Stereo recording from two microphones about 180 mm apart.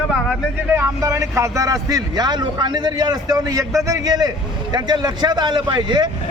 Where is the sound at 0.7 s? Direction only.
15° right (ahead or behind).